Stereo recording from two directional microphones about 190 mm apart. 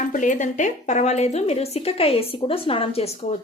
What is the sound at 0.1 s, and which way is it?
A woman's voice, 40° left (ahead or behind).